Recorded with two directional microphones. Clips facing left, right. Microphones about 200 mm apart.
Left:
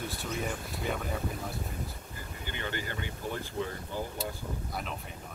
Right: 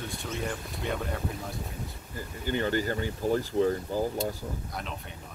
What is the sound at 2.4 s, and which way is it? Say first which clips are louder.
Speech: right 10 dB; 40° right (ahead or behind).